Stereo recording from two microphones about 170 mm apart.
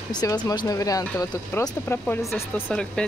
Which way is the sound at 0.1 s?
20° left (ahead or behind).